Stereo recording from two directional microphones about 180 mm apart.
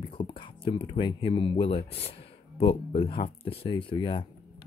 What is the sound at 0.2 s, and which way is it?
Speech, 30° left (ahead or behind).